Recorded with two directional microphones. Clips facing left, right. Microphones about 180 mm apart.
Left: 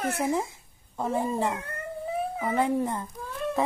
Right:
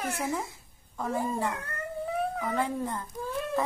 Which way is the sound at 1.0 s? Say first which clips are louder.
Left 3 dB; 25° left (ahead or behind).